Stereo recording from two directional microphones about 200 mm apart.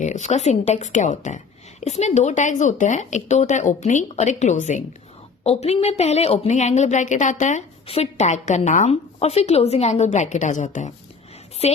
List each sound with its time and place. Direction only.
0.0 s a woman's voice: 35° left (ahead or behind)